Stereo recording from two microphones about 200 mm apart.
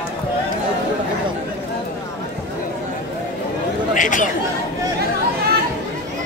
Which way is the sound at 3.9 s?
40° left (ahead or behind).